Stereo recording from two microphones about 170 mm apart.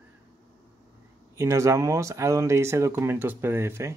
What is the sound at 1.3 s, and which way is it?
Speech, 15° right (ahead or behind).